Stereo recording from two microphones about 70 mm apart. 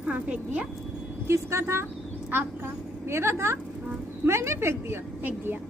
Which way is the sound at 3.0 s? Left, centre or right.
Right.